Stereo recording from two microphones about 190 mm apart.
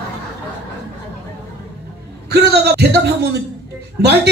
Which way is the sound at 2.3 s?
60° right (ahead or behind).